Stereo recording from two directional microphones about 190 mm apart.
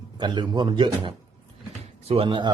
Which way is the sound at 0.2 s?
25° right (ahead or behind).